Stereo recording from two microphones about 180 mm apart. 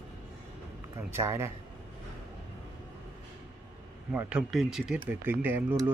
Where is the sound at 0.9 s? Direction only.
15° right (ahead or behind).